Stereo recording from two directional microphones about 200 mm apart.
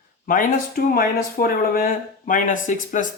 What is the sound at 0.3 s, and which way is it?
Speech, 45° left (ahead or behind).